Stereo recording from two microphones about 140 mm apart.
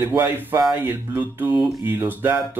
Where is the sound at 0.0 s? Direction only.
15° right (ahead or behind).